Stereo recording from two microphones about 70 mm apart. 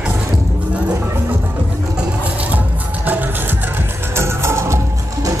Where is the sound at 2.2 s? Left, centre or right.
Centre.